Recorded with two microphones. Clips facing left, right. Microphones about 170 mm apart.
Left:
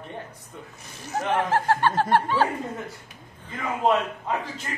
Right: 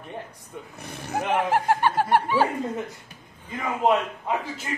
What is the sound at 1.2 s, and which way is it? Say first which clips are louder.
Speech: even; 10° right (ahead or behind).